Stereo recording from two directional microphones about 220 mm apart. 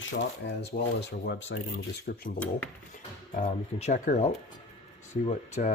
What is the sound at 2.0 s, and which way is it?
Speech, 40° left (ahead or behind).